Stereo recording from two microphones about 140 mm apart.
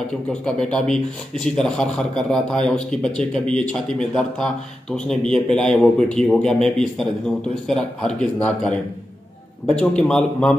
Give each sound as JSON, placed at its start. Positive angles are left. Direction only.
{"t": 0.3, "sound": "speech", "side_deg": 5}